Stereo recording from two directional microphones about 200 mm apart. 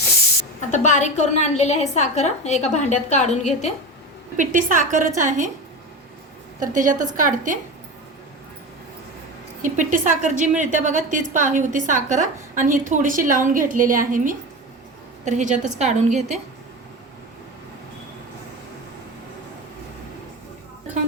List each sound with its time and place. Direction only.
0.7 s a woman's voice: 35° left (ahead or behind)
4.4 s a woman's voice: 40° right (ahead or behind)
6.6 s a woman's voice: 40° right (ahead or behind)
9.6 s a woman's voice: 40° right (ahead or behind)